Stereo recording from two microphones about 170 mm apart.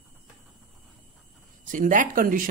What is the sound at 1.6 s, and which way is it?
Speech, 50° right (ahead or behind).